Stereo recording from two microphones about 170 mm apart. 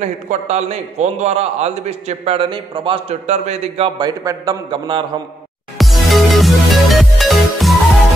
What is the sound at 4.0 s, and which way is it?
A man's voice, 25° right (ahead or behind).